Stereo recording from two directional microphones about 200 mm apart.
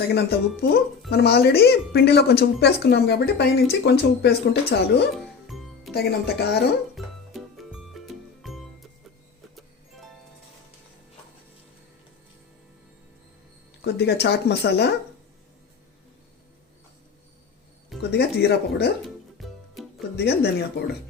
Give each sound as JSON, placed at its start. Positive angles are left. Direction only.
{"t": 0.1, "sound": "speech", "side_deg": 55}
{"t": 5.5, "sound": "music", "side_deg": 0}
{"t": 5.9, "sound": "speech", "side_deg": 50}
{"t": 6.9, "sound": "music", "side_deg": 0}
{"t": 13.8, "sound": "speech", "side_deg": 55}
{"t": 18.1, "sound": "speech", "side_deg": 55}
{"t": 19.4, "sound": "music", "side_deg": 0}
{"t": 20.1, "sound": "speech", "side_deg": 55}